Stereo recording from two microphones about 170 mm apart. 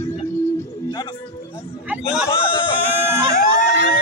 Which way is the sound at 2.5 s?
30° left (ahead or behind).